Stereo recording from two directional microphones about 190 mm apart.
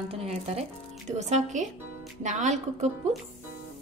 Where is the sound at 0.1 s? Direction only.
35° right (ahead or behind).